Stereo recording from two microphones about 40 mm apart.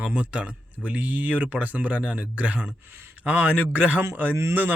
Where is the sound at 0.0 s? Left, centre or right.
Right.